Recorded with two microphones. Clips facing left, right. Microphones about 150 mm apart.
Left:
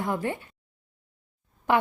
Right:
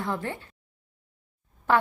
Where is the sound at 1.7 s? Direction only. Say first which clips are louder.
Even; 15° left (ahead or behind).